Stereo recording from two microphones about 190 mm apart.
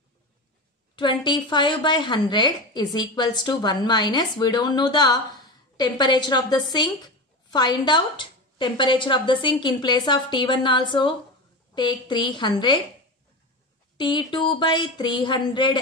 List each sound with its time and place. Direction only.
0.9 s speech: 25° left (ahead or behind)
13.9 s speech: 25° left (ahead or behind)